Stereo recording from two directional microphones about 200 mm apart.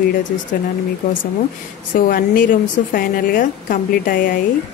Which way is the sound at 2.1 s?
45° left (ahead or behind).